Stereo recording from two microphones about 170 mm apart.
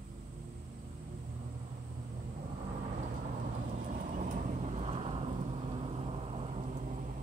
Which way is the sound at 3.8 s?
50° right (ahead or behind).